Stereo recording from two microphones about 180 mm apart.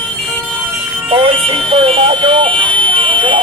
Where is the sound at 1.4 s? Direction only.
30° right (ahead or behind).